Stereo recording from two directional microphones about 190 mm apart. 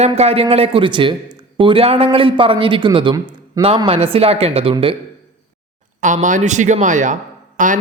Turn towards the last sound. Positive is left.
turn(degrees=-40)  # may be behind; listen again after turning